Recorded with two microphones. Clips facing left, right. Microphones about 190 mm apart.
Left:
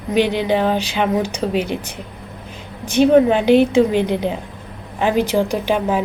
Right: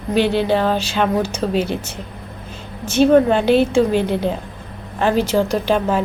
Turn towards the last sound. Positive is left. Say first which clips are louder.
# right 1 dB
turn(degrees=10)  # may be behind; listen again after turning